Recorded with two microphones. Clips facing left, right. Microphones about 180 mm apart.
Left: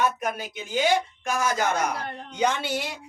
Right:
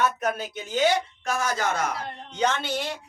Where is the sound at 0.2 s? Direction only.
10° left (ahead or behind).